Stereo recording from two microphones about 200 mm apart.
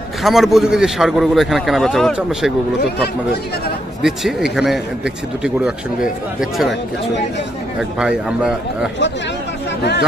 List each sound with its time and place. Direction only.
0.2 s a man's voice: centre (ahead or behind)
3.0 s speech: 50° left (ahead or behind)
4.0 s a man's voice: centre (ahead or behind)
8.0 s a man's voice: 5° right (ahead or behind)